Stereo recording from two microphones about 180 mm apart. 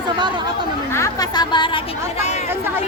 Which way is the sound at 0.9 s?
20° left (ahead or behind).